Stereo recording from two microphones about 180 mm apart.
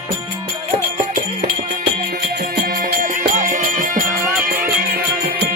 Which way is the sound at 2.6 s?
55° right (ahead or behind).